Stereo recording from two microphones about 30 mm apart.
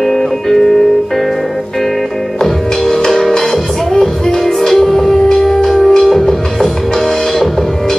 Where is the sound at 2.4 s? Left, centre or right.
Centre.